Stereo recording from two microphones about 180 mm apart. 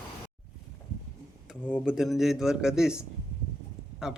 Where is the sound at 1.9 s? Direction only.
Centre (ahead or behind).